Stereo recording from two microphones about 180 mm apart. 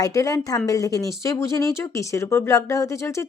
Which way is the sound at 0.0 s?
20° left (ahead or behind).